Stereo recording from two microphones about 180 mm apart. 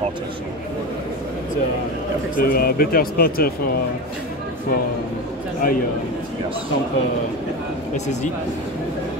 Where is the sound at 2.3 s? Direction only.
55° left (ahead or behind).